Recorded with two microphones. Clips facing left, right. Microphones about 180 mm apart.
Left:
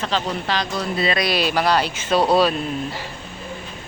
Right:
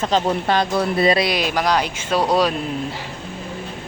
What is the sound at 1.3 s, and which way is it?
Speech, 15° right (ahead or behind).